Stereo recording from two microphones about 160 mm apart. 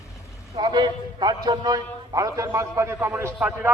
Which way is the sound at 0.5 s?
25° right (ahead or behind).